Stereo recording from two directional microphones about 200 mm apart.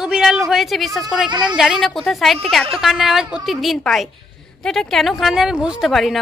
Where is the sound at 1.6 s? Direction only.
Centre (ahead or behind).